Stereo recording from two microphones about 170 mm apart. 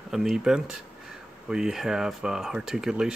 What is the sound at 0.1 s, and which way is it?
Speech, centre (ahead or behind).